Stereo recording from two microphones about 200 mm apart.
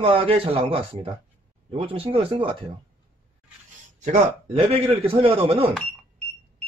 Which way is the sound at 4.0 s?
30° right (ahead or behind).